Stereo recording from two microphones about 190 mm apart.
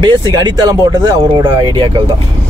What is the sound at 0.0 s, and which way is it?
Speech, 25° right (ahead or behind).